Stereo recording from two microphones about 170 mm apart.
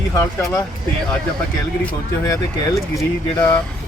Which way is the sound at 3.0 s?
20° left (ahead or behind).